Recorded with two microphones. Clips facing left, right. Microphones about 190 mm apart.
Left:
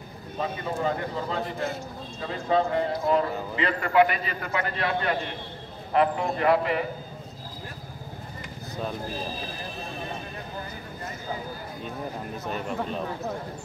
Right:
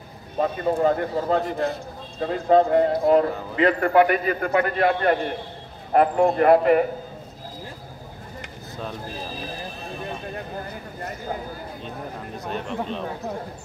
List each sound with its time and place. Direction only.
0.4 s a man's voice: 50° right (ahead or behind)
12.4 s speech: 5° left (ahead or behind)